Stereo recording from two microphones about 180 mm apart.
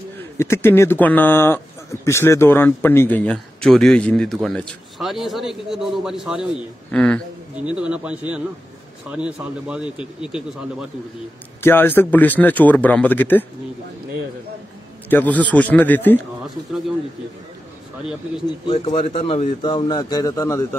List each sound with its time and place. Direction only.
0.4 s a man's voice: 15° left (ahead or behind)
7.7 s a man's voice: 5° right (ahead or behind)
11.6 s a man's voice: 10° left (ahead or behind)
15.0 s a man's voice: 10° left (ahead or behind)
18.9 s a man's voice: 35° left (ahead or behind); by 20.6 s 15° left (ahead or behind)